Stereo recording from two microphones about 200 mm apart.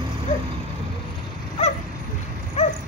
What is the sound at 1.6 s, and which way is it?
Vehicle, 35° left (ahead or behind).